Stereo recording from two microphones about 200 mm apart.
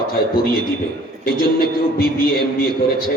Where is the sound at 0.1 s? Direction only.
45° left (ahead or behind).